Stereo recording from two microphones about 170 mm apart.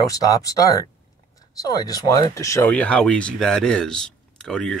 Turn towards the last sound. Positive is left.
turn(degrees=5)  # may be behind; listen again after turning